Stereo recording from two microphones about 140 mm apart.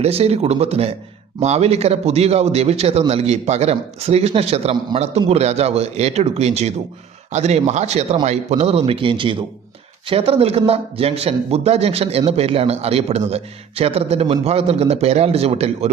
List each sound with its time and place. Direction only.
0.0 s speech: 45° right (ahead or behind)